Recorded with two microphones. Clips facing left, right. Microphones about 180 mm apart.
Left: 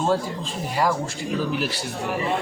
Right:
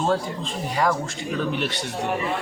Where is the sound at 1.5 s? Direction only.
5° left (ahead or behind).